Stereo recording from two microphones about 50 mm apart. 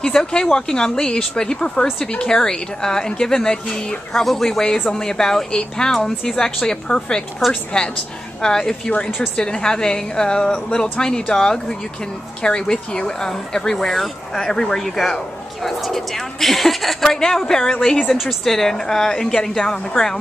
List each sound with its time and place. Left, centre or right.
0.0 s a woman's voice: centre